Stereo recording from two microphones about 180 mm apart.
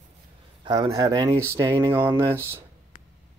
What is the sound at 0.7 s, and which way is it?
Speech, 20° right (ahead or behind).